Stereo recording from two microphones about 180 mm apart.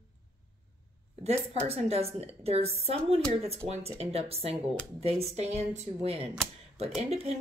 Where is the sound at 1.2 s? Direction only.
35° right (ahead or behind).